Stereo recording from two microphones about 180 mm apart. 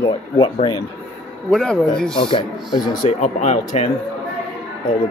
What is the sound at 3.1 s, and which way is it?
Speech, 40° left (ahead or behind).